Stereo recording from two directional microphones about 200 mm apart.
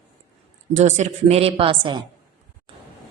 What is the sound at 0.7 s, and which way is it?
A woman's voice, 35° right (ahead or behind).